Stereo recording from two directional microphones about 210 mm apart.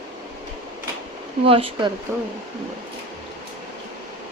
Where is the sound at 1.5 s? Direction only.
25° right (ahead or behind).